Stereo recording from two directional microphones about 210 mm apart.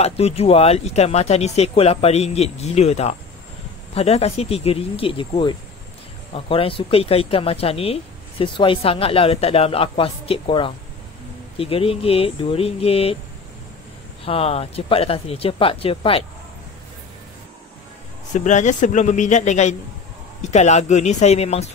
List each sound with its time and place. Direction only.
0.0 s speech: 30° left (ahead or behind)
14.2 s speech: 30° left (ahead or behind)
18.3 s speech: 35° left (ahead or behind)